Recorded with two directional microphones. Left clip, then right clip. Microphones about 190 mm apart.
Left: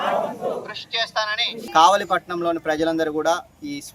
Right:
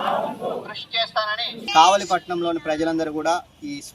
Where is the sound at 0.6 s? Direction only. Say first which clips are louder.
Even; 30° left (ahead or behind).